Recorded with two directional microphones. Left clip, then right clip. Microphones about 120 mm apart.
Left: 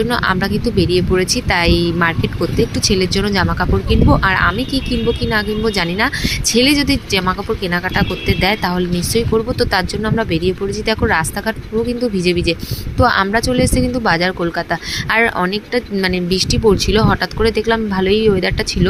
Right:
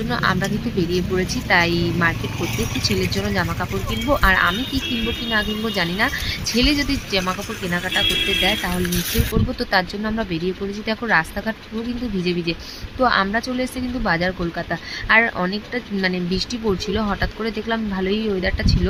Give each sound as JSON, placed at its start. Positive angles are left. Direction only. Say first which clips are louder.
{"t": 0.1, "sound": "a woman's voice", "louder": "left 5 dB", "side_deg": 40}
{"t": 9.6, "sound": "a woman's voice", "louder": "left 4 dB", "side_deg": 35}